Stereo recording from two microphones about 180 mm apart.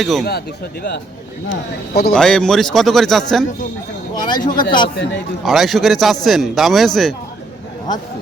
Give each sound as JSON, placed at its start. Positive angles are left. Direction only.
{"t": 0.0, "sound": "speech", "side_deg": 0}
{"t": 0.3, "sound": "speech", "side_deg": 65}
{"t": 2.1, "sound": "speech", "side_deg": 5}
{"t": 4.1, "sound": "a man's voice", "side_deg": 25}
{"t": 5.5, "sound": "speech", "side_deg": 0}